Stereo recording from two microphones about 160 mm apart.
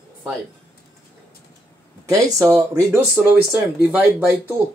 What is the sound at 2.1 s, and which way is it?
Speech, 20° right (ahead or behind).